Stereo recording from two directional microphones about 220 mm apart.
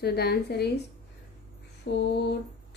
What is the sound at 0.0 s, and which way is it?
Speech, 45° left (ahead or behind).